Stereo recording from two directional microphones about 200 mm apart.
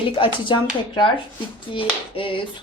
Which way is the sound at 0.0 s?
25° left (ahead or behind).